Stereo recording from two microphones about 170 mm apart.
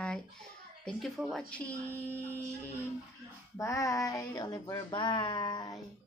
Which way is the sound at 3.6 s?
20° left (ahead or behind).